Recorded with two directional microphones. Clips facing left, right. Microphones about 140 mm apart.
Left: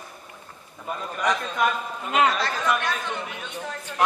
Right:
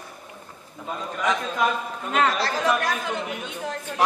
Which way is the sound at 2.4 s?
35° right (ahead or behind).